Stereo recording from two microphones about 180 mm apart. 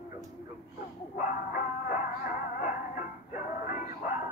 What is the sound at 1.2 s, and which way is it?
Music, 45° left (ahead or behind).